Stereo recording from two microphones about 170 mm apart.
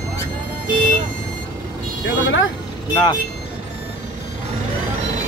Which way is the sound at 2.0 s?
90° left.